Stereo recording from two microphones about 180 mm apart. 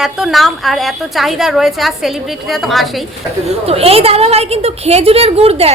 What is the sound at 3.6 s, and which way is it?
A woman's voice, 35° right (ahead or behind).